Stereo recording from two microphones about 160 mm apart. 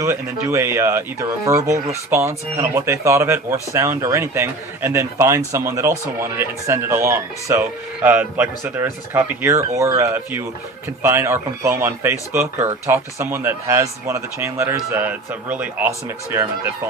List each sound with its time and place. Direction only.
0.0 s speech: 15° right (ahead or behind)